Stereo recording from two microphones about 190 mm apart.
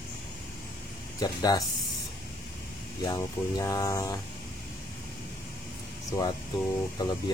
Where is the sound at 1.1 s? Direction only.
20° left (ahead or behind).